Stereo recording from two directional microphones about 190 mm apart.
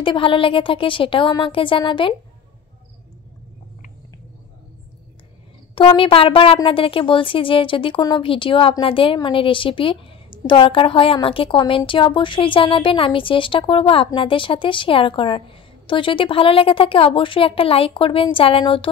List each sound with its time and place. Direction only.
0.0 s a woman's voice: 25° left (ahead or behind)
5.8 s a woman's voice: 25° left (ahead or behind)